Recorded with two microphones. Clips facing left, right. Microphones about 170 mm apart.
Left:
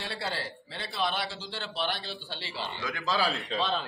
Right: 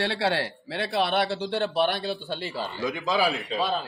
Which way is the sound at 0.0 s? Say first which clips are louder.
Right 9 dB; 70° right (ahead or behind).